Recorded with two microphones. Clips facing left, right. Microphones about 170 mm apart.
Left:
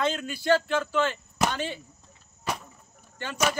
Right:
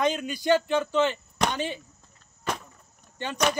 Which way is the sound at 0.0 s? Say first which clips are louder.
Right 2 dB; 15° right (ahead or behind).